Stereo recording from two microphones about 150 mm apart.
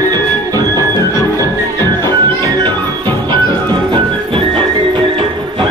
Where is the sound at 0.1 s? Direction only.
25° right (ahead or behind).